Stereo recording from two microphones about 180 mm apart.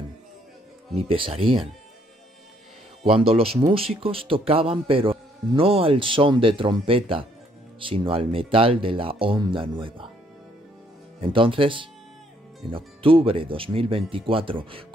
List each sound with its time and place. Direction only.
0.9 s a man's voice: 30° right (ahead or behind)
3.0 s a man's voice: 30° right (ahead or behind)
11.1 s a man's voice: 30° right (ahead or behind)